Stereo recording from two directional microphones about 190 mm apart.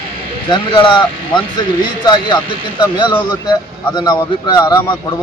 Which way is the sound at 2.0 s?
20° left (ahead or behind).